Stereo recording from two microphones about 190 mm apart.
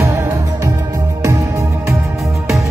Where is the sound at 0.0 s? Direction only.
15° right (ahead or behind).